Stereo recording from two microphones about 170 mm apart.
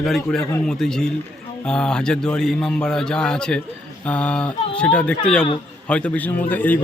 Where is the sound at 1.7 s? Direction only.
5° left (ahead or behind).